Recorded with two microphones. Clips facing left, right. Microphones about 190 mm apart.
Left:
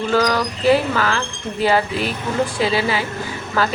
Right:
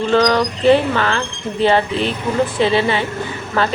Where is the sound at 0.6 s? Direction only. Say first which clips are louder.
Right 2 dB; 5° left (ahead or behind).